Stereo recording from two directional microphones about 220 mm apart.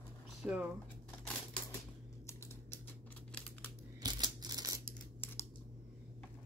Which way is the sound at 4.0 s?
20° right (ahead or behind).